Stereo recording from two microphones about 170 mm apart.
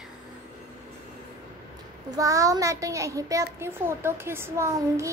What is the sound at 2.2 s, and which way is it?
A child's voice, 20° right (ahead or behind).